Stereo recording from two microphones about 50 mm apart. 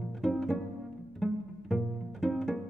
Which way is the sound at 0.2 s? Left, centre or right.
Centre.